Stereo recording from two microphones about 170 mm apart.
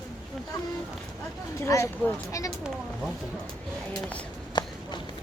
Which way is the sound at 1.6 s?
15° left (ahead or behind).